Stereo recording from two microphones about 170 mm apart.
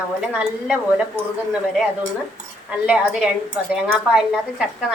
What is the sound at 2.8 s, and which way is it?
A woman's voice, 5° right (ahead or behind).